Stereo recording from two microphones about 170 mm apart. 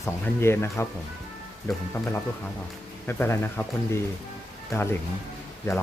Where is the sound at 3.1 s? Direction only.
15° left (ahead or behind).